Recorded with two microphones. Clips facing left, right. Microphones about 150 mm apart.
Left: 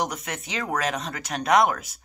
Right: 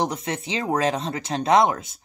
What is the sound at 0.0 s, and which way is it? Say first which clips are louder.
Speech: right 4 dB; 25° right (ahead or behind).